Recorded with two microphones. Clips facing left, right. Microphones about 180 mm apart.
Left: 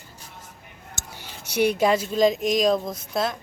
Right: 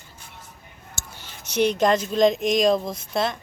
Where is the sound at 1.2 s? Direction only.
10° left (ahead or behind).